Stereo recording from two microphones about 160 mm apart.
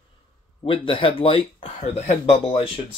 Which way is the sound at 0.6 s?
35° left (ahead or behind).